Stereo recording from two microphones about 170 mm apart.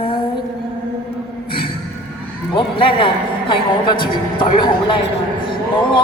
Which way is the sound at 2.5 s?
30° left (ahead or behind).